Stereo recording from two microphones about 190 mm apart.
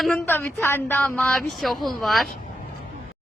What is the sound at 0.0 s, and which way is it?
Speech, 5° left (ahead or behind).